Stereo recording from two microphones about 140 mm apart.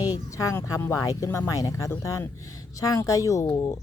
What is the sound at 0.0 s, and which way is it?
Speech, 25° left (ahead or behind).